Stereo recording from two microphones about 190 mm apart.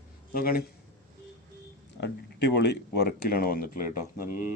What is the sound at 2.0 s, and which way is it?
Speech, 60° left (ahead or behind).